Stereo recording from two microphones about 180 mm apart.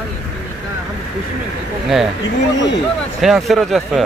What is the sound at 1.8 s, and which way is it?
Speech, centre (ahead or behind).